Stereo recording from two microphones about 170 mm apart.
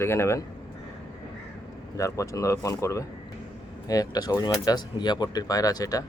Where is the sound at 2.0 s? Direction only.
20° left (ahead or behind).